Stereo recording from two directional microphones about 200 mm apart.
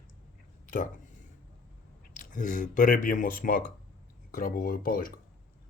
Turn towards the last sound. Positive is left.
turn(degrees=45)  # may be behind; listen again after turning